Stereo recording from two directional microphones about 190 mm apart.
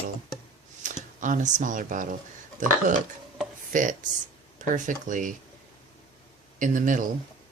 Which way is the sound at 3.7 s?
45° right (ahead or behind).